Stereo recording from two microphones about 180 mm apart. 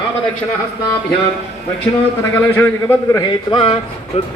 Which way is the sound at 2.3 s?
15° left (ahead or behind).